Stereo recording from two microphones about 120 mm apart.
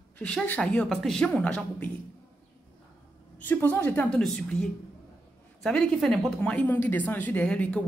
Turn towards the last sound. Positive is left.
turn(degrees=10)  # may be behind; listen again after turning